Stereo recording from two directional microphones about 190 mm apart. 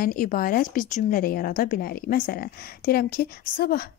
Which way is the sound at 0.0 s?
45° left (ahead or behind).